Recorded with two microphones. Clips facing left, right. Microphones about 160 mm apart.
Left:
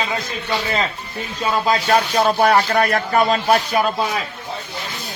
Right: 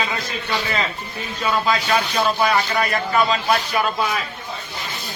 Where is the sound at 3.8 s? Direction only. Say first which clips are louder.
Left 3 dB; 40° left (ahead or behind).